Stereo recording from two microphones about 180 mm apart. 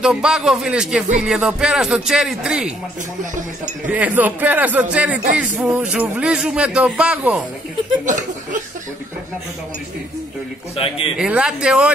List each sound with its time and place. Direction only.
0.0 s speech: 5° right (ahead or behind)
3.8 s a man's voice: 10° right (ahead or behind)
8.0 s laughter: 45° right (ahead or behind)
11.1 s speech: 5° right (ahead or behind)